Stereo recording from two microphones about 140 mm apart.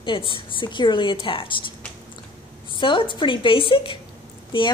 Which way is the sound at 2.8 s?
35° left (ahead or behind).